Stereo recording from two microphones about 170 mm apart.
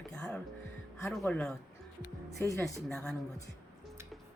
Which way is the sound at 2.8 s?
5° left (ahead or behind).